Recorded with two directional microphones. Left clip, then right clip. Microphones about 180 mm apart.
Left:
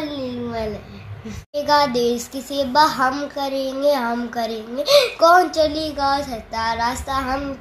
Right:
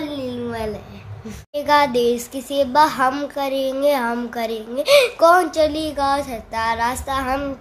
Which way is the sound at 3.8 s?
35° right (ahead or behind).